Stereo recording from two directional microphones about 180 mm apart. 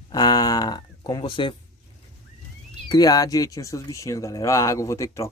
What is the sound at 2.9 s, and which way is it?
Speech, 20° left (ahead or behind).